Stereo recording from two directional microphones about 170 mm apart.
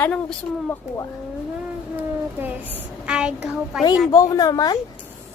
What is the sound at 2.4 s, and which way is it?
Train, 10° right (ahead or behind).